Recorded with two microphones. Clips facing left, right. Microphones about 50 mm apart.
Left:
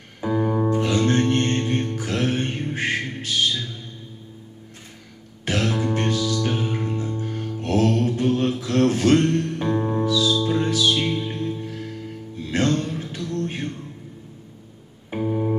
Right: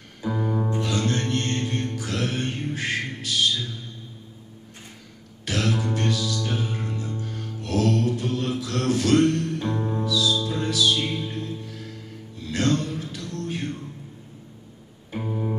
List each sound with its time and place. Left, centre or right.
0.3 s music: left
0.7 s music: left
5.4 s music: left
10.0 s music: left
15.1 s organ: centre